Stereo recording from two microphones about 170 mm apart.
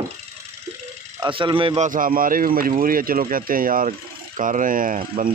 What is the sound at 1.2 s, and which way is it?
Speech, 30° right (ahead or behind).